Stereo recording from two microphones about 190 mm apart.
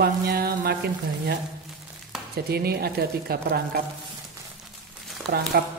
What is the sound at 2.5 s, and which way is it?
Speech, 55° right (ahead or behind).